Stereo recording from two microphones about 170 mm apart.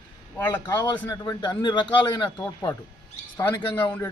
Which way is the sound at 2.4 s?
15° left (ahead or behind).